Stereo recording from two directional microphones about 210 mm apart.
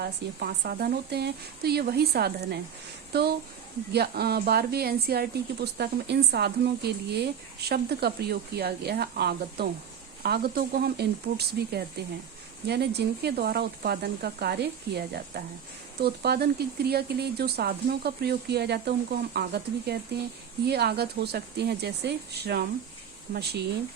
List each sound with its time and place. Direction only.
0.0 s speech: 50° right (ahead or behind)